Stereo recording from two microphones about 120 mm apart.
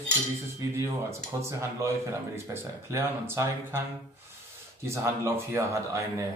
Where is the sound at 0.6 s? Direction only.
25° right (ahead or behind).